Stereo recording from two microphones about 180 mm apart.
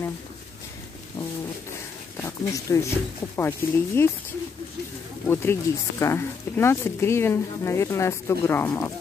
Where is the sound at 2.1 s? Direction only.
15° left (ahead or behind).